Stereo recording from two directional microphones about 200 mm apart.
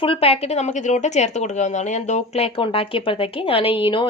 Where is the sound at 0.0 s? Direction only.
25° left (ahead or behind).